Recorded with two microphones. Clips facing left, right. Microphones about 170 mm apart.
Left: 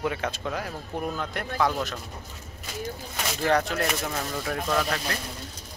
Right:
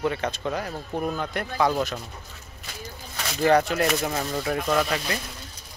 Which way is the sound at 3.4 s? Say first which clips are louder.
Right 5 dB; 5° right (ahead or behind).